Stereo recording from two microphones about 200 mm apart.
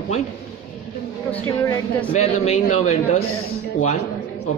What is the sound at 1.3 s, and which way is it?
Speech, 10° left (ahead or behind).